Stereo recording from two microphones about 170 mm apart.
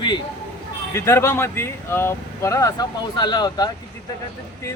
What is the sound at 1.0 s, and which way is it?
Speech, 15° left (ahead or behind).